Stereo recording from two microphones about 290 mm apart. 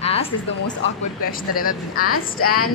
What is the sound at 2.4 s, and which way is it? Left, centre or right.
Speech, left.